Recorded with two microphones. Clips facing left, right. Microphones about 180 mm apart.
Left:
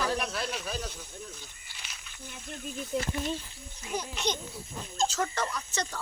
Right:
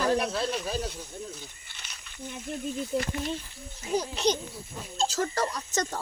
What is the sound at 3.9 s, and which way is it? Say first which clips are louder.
Speech: right 6 dB; 35° right (ahead or behind).